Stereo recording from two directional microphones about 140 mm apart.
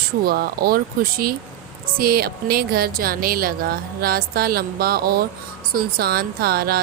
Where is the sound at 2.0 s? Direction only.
90° right.